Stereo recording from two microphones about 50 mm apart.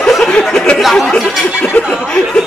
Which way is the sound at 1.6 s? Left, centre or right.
Left.